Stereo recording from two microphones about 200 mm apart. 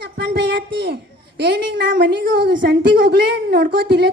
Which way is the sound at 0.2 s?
55° right (ahead or behind).